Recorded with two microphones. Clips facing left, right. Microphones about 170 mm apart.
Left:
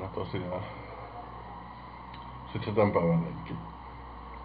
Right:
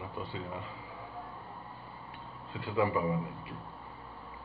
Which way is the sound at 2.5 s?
30° left (ahead or behind).